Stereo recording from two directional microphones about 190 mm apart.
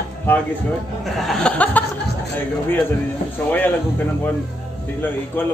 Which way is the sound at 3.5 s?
10° left (ahead or behind).